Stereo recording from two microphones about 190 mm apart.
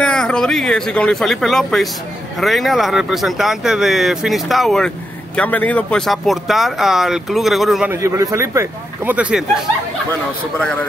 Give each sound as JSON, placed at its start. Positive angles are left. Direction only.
{"t": 0.0, "sound": "speech", "side_deg": 5}
{"t": 7.9, "sound": "speech", "side_deg": -15}
{"t": 10.6, "sound": "a man's voice", "side_deg": 5}